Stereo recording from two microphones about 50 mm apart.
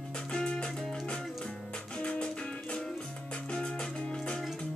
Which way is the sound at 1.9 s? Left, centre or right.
Centre.